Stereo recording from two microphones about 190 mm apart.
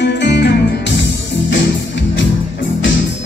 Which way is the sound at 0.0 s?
65° left (ahead or behind).